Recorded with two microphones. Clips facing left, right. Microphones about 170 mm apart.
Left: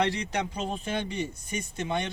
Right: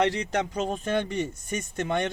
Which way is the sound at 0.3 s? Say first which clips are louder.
Right 4 dB; 45° right (ahead or behind).